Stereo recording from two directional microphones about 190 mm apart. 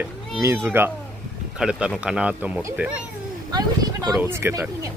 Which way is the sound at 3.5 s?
20° right (ahead or behind).